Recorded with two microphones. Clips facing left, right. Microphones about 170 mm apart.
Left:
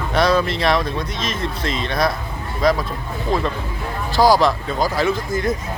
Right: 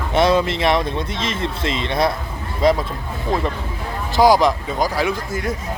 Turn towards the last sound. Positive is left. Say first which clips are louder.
# left 2 dB
turn(degrees=-10)  # may be behind; listen again after turning